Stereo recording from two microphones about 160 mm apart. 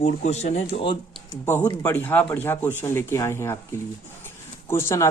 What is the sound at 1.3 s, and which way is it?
Speech, 15° left (ahead or behind).